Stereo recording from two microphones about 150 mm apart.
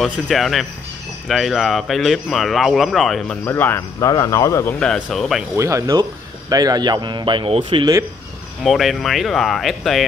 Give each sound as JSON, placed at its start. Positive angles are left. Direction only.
{"t": 0.0, "sound": "speech", "side_deg": 0}
{"t": 3.4, "sound": "speech", "side_deg": 15}
{"t": 4.1, "sound": "speech", "side_deg": 25}
{"t": 4.7, "sound": "speech", "side_deg": 5}
{"t": 5.6, "sound": "speech", "side_deg": -20}
{"t": 8.6, "sound": "speech", "side_deg": 0}